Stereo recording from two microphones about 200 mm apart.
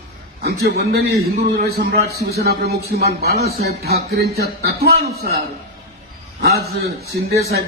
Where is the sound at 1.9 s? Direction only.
55° right (ahead or behind).